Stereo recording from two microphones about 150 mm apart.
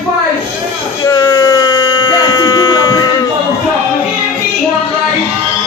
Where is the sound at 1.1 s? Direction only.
25° left (ahead or behind).